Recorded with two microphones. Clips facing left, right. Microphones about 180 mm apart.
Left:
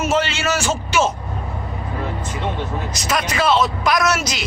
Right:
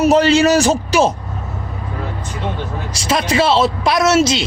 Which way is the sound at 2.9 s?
30° right (ahead or behind).